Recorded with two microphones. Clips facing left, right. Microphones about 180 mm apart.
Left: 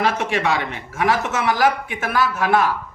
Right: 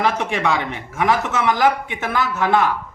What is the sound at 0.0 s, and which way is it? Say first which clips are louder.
A man's voice: even; 15° right (ahead or behind).